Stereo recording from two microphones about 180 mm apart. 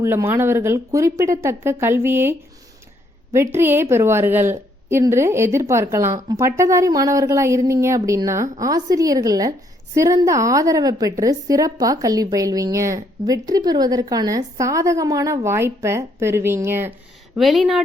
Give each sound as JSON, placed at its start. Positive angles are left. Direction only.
{"t": 0.0, "sound": "a woman's voice", "side_deg": -15}
{"t": 3.3, "sound": "a woman's voice", "side_deg": -15}
{"t": 17.3, "sound": "speech", "side_deg": 0}